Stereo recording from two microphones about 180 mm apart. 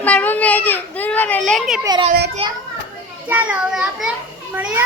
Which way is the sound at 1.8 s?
25° right (ahead or behind).